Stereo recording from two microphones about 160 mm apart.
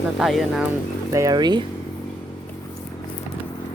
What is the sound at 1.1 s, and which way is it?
Speech, 25° right (ahead or behind).